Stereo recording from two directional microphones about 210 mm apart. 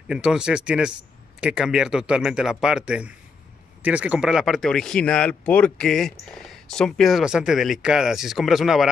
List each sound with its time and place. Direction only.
0.1 s speech: 5° right (ahead or behind)